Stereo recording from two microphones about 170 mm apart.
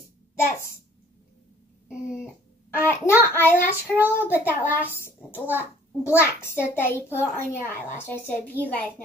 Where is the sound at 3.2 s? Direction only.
15° left (ahead or behind).